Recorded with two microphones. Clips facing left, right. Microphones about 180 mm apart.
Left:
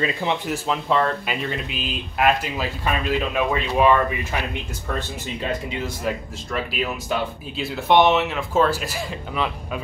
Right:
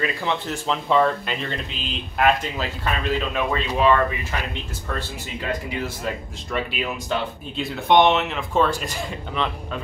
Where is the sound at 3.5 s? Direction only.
15° left (ahead or behind).